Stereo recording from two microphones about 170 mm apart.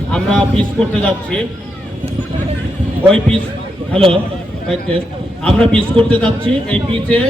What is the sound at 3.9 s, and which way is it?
Speech, 30° right (ahead or behind).